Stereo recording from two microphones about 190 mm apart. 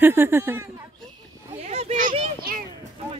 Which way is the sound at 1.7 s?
35° right (ahead or behind).